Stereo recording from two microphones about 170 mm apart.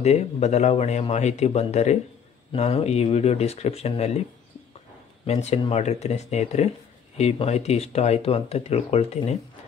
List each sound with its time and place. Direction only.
0.0 s speech: 40° left (ahead or behind)
5.2 s speech: 40° left (ahead or behind)